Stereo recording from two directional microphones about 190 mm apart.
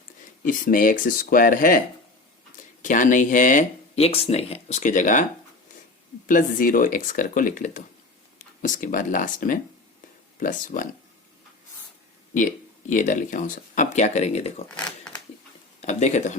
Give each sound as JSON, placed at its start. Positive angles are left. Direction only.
{"t": 0.4, "sound": "speech", "side_deg": 45}
{"t": 2.8, "sound": "speech", "side_deg": 45}
{"t": 6.2, "sound": "speech", "side_deg": 45}
{"t": 12.3, "sound": "speech", "side_deg": 40}
{"t": 14.8, "sound": "zipper", "side_deg": 5}
{"t": 15.8, "sound": "speech", "side_deg": 35}